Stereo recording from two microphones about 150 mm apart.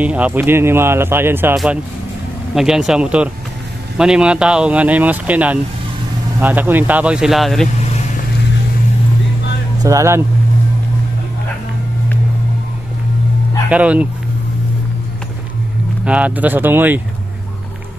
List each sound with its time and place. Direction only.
0.0 s speech: 10° right (ahead or behind)
2.5 s speech: 5° right (ahead or behind)
9.8 s speech: 20° right (ahead or behind)
13.7 s speech: 10° right (ahead or behind)
16.0 s speech: 10° right (ahead or behind)